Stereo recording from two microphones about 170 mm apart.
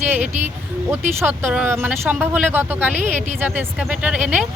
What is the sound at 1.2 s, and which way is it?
Speech, 10° right (ahead or behind).